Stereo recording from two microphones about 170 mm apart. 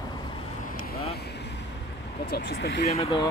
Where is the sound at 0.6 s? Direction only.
65° left (ahead or behind); by 1.6 s 85° left.